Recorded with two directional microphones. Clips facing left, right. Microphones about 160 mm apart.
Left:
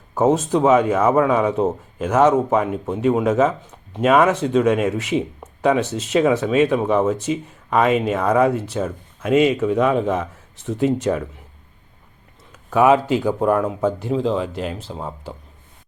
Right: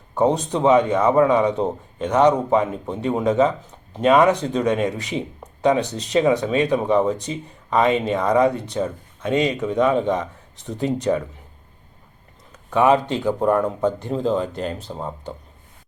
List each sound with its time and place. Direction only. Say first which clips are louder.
0.1 s speech: left 2 dB; 5° left (ahead or behind)
12.7 s speech: left 2 dB; 5° left (ahead or behind)